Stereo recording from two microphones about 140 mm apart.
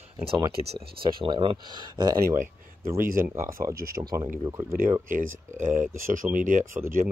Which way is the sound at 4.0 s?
30° right (ahead or behind).